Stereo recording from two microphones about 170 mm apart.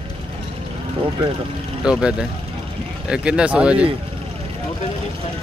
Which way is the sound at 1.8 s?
5° right (ahead or behind).